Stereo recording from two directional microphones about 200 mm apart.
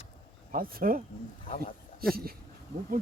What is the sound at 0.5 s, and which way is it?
Speech, 45° right (ahead or behind).